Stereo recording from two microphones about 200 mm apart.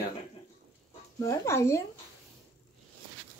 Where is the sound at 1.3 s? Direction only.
15° left (ahead or behind).